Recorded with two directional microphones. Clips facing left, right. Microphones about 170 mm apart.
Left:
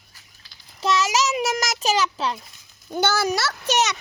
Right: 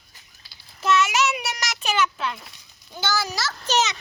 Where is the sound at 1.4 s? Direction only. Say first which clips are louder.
Left 7 dB; 45° left (ahead or behind).